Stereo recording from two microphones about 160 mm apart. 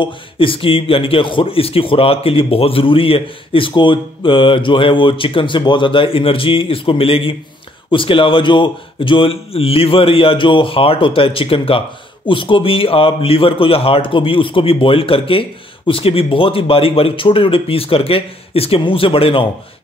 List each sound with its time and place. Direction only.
0.0 s a man's voice: 35° left (ahead or behind)